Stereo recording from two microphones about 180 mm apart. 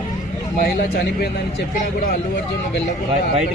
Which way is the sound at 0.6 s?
60° left (ahead or behind).